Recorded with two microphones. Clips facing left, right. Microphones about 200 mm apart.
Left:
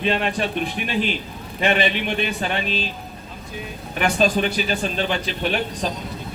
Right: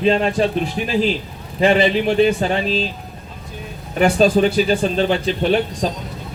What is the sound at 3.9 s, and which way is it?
A man's voice, 35° right (ahead or behind).